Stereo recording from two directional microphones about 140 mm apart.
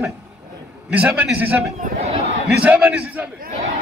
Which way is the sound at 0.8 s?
10° right (ahead or behind).